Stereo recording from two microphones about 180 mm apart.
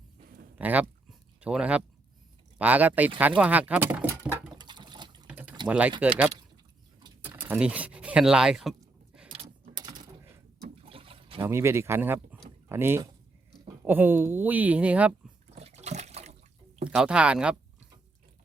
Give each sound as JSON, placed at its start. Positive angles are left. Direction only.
{"t": 0.6, "sound": "speech", "side_deg": -10}
{"t": 4.2, "sound": "patter", "side_deg": -10}
{"t": 4.5, "sound": "sewing machine", "side_deg": -25}
{"t": 5.3, "sound": "a sound", "side_deg": -5}
{"t": 5.6, "sound": "speech", "side_deg": -5}
{"t": 9.7, "sound": "typing", "side_deg": -25}
{"t": 10.8, "sound": "trickle", "side_deg": -30}
{"t": 11.4, "sound": "speech", "side_deg": -15}
{"t": 15.5, "sound": "water", "side_deg": -35}
{"t": 16.9, "sound": "speech", "side_deg": -5}